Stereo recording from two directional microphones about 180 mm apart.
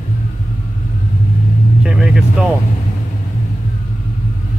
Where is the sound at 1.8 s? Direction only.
5° right (ahead or behind).